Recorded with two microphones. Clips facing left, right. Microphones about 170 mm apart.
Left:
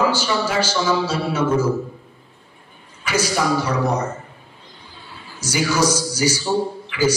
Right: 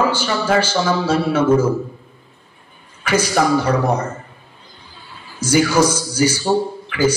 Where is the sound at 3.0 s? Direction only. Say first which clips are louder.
Right 4 dB; 55° right (ahead or behind).